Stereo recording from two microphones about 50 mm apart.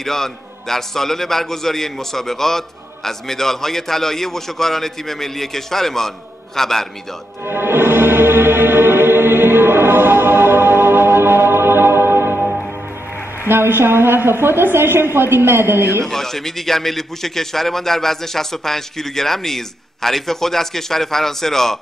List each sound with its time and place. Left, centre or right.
0.0 s a man's voice: centre
7.4 s music: right
13.5 s a woman's voice: right
16.1 s a man's voice: centre